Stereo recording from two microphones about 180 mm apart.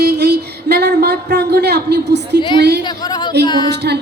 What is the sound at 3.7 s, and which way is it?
Speech, 65° right (ahead or behind).